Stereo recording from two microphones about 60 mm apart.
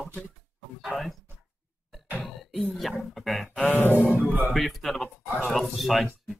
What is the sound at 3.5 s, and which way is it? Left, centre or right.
Grunt, left.